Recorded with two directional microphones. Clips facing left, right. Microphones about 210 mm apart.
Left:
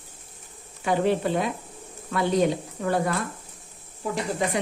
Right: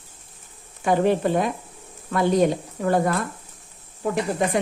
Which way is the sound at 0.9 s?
45° right (ahead or behind).